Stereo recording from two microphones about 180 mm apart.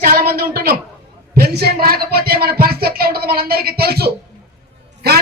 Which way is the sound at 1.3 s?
60° right (ahead or behind).